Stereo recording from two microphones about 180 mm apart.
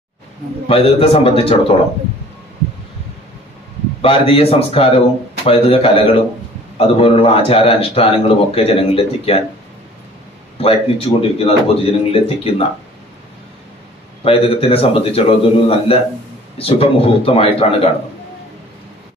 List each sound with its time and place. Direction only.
0.7 s speech: 35° left (ahead or behind)
4.0 s speech: 35° left (ahead or behind)
10.6 s speech: 30° left (ahead or behind)
14.2 s speech: 30° left (ahead or behind)